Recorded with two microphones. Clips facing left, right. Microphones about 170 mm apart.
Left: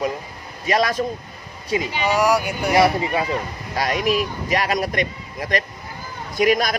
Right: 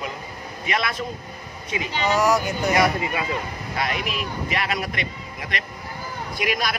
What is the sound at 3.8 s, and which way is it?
Speech, 40° left (ahead or behind).